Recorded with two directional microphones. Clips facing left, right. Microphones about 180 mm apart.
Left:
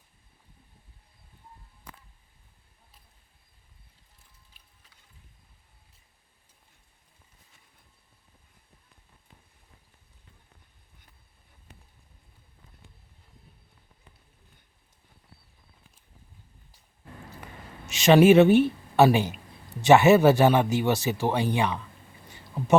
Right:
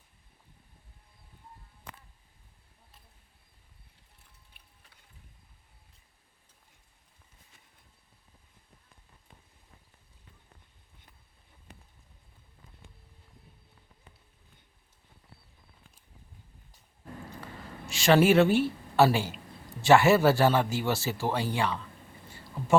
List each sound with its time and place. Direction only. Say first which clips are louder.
4.6 s music: right 1 dB; 60° right (ahead or behind)
17.4 s speech: right 1 dB; 20° left (ahead or behind)
22.3 s a sound: left 3 dB; 20° left (ahead or behind)